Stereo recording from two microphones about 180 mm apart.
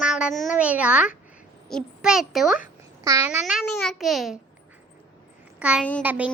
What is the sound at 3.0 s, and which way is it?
Speech, 15° right (ahead or behind).